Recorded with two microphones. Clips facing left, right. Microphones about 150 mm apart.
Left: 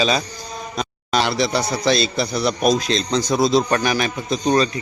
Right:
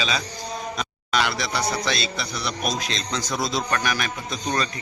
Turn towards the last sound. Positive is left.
turn(degrees=30)  # may be behind; listen again after turning